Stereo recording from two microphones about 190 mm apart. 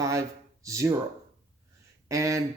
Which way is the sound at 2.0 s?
15° right (ahead or behind).